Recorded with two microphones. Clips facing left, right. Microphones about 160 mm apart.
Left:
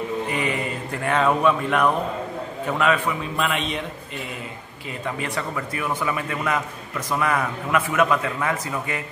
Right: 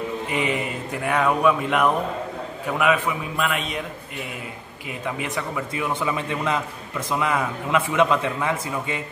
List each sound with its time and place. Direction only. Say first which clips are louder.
0.3 s mantra: right 1 dB; 20° right (ahead or behind)
1.0 s speech: even; 10° right (ahead or behind)
3.3 s speech: left 1 dB; 5° right (ahead or behind)
5.0 s a man's voice: even; 15° right (ahead or behind)